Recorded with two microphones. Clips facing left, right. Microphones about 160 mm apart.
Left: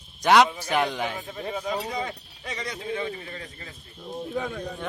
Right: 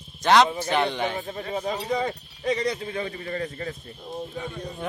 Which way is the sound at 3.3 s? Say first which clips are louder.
Right 10 dB; 50° right (ahead or behind).